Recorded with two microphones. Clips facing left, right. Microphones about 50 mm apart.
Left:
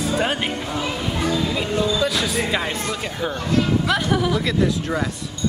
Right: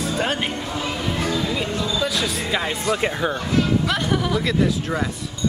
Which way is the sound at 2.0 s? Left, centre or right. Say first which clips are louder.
Left 2 dB; centre.